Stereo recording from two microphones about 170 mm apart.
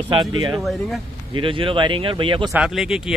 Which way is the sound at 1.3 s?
30° right (ahead or behind).